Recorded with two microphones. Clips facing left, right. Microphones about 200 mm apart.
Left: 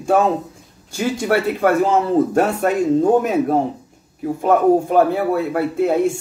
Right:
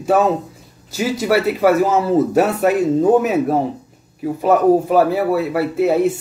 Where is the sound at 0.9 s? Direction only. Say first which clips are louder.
Right 1 dB; 5° right (ahead or behind).